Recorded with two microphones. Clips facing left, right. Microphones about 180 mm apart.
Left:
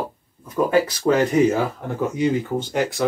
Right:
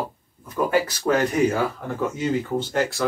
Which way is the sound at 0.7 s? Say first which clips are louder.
Left 3 dB; 25° left (ahead or behind).